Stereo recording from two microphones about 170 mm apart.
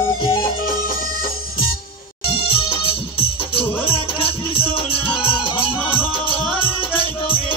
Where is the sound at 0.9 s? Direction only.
55° left (ahead or behind).